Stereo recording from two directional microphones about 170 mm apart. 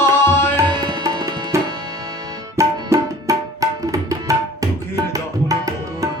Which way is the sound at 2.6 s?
20° right (ahead or behind).